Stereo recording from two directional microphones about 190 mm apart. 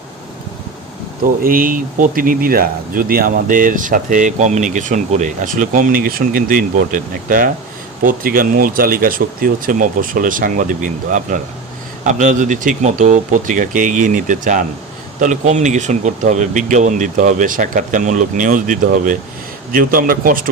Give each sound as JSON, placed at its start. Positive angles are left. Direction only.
{"t": 1.4, "sound": "speech", "side_deg": -50}